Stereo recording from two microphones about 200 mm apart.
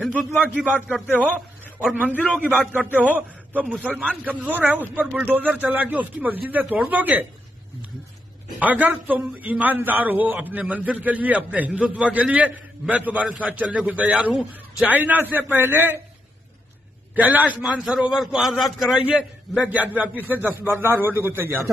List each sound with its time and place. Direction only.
0.0 s a man's voice: centre (ahead or behind)
8.5 s a man's voice: 10° right (ahead or behind)
17.1 s a man's voice: 10° right (ahead or behind)